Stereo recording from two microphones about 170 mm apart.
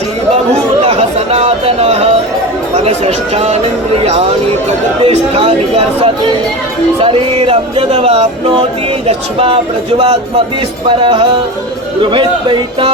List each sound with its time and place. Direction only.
0.9 s chatter: 35° right (ahead or behind)
2.7 s speech: 40° right (ahead or behind)
5.0 s music: 35° right (ahead or behind)
12.0 s speech: 30° right (ahead or behind)